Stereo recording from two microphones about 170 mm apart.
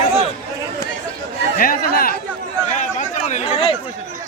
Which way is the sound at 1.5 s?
60° left (ahead or behind).